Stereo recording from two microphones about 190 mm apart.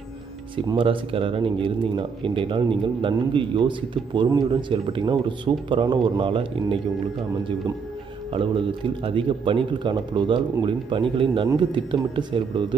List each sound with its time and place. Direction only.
0.7 s speech: 25° right (ahead or behind)
8.3 s speech: 30° right (ahead or behind)